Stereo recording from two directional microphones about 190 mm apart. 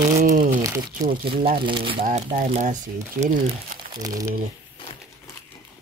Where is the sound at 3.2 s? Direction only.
55° right (ahead or behind).